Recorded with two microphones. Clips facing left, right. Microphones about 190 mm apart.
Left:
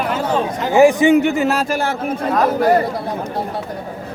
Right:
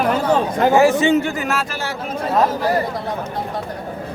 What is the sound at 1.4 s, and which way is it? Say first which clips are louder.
Speech: left 5 dB; 35° left (ahead or behind).